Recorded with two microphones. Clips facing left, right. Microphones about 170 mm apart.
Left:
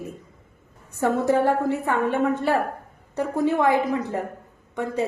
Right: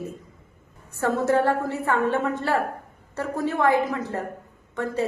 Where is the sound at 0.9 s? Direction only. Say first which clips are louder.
Left 1 dB; 15° left (ahead or behind).